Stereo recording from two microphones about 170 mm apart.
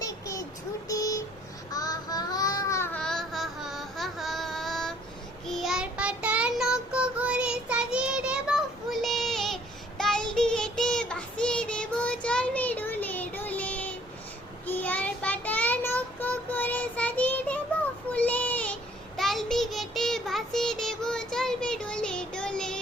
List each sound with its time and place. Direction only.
0.0 s child singing: 20° left (ahead or behind)
0.9 s vehicle: 20° left (ahead or behind)
1.7 s babbling: 20° left (ahead or behind); by 4.9 s centre (ahead or behind)
5.5 s child singing: centre (ahead or behind)